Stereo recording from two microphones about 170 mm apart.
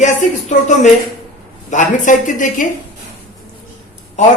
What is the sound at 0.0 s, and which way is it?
A woman's voice, 45° left (ahead or behind).